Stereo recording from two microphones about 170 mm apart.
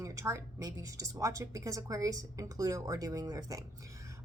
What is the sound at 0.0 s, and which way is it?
A woman's voice, 20° right (ahead or behind).